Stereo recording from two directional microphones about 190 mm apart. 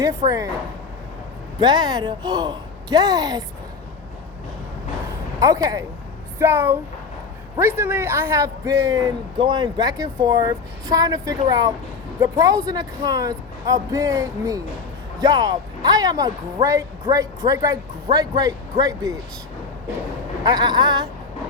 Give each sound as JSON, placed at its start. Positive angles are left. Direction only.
{"t": 0.2, "sound": "a woman's voice", "side_deg": -40}
{"t": 1.5, "sound": "a man's voice", "side_deg": -20}
{"t": 5.4, "sound": "a man's voice", "side_deg": -20}
{"t": 20.4, "sound": "a man's voice", "side_deg": -20}